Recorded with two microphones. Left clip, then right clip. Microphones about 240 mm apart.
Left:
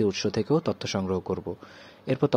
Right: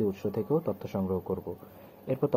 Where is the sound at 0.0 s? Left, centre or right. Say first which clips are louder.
Left 5 dB; left.